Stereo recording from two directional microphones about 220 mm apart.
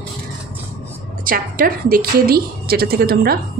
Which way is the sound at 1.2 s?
40° right (ahead or behind).